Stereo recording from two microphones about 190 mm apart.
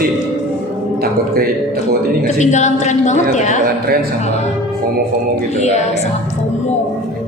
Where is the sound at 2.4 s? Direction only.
40° left (ahead or behind).